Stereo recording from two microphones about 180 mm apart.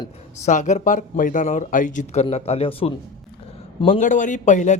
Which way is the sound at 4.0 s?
45° left (ahead or behind).